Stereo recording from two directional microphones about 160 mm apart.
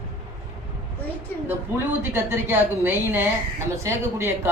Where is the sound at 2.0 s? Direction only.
15° right (ahead or behind).